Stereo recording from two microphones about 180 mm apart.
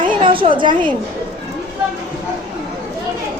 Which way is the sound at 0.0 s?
30° right (ahead or behind).